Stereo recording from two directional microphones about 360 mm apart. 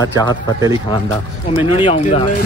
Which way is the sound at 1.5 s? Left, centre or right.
Centre.